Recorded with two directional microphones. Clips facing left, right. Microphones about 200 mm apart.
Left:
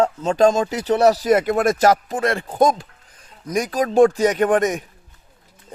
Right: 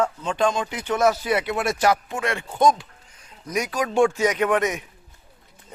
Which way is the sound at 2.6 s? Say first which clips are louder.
Left 1 dB; 50° left (ahead or behind).